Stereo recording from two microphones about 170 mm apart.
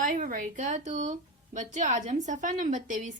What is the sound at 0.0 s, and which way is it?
A woman's voice, 50° right (ahead or behind).